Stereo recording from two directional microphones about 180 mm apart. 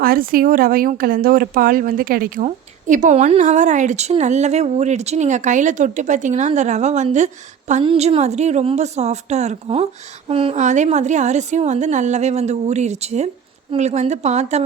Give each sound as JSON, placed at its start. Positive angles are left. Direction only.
{"t": 0.0, "sound": "a woman's voice", "side_deg": -55}